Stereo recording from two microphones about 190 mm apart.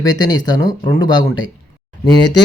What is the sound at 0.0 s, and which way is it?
Speech, 20° left (ahead or behind).